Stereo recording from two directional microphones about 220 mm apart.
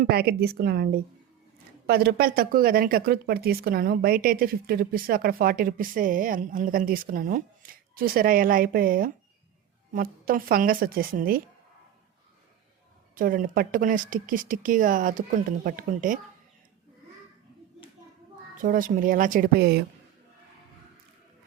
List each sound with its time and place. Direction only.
0.0 s a woman's voice: 45° right (ahead or behind)
13.1 s speech: 40° right (ahead or behind)
18.6 s speech: 40° right (ahead or behind)